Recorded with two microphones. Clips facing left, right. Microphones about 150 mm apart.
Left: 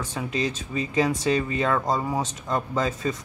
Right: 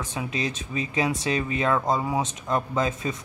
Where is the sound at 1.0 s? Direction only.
5° right (ahead or behind).